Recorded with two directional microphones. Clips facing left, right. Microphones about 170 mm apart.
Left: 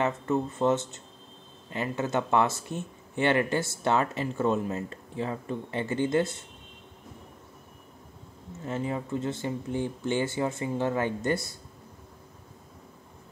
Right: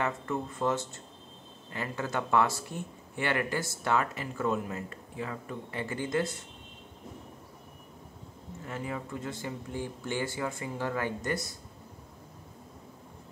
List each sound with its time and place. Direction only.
0.0 s speech: 25° left (ahead or behind)
8.6 s speech: 25° left (ahead or behind)